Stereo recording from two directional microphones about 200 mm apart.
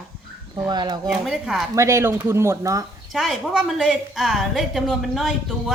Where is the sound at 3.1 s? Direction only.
Centre (ahead or behind).